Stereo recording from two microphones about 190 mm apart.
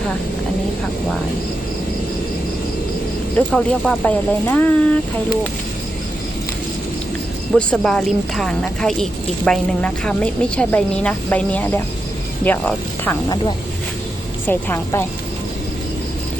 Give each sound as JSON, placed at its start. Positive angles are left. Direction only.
{"t": 3.3, "sound": "speech", "side_deg": 5}
{"t": 7.5, "sound": "speech", "side_deg": 5}
{"t": 13.2, "sound": "speech", "side_deg": 25}
{"t": 14.4, "sound": "speech", "side_deg": 10}